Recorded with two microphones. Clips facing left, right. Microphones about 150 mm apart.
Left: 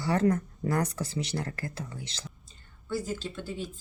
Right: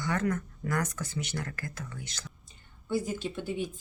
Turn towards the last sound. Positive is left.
turn(degrees=-15)  # may be behind; listen again after turning